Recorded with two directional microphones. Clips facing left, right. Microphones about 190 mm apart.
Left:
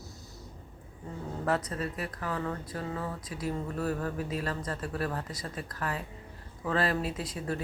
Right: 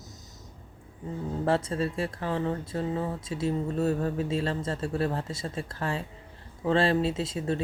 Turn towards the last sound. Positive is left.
turn(degrees=-25)  # may be behind; listen again after turning